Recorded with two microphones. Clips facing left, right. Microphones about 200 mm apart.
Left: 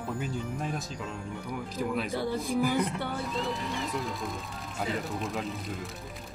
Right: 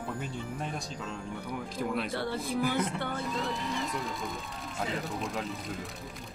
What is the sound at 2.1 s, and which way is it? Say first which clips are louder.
Speech: left 3 dB; 15° left (ahead or behind).